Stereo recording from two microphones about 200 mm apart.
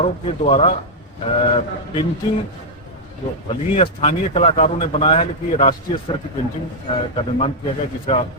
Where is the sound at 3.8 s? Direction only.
30° left (ahead or behind).